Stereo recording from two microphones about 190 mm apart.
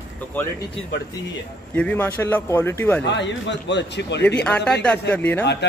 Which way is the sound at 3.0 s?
70° left (ahead or behind).